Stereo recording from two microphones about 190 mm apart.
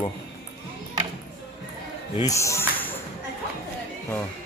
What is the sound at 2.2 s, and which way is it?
Speech, 15° left (ahead or behind).